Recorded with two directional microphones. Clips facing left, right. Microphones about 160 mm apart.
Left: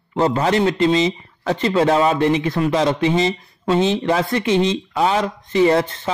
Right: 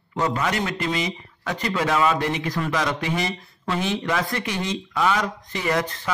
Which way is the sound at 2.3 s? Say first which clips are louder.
Left 7 dB; 20° left (ahead or behind).